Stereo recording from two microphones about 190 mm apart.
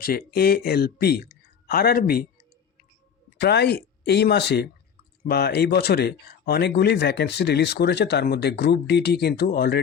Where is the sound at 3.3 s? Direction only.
60° left (ahead or behind).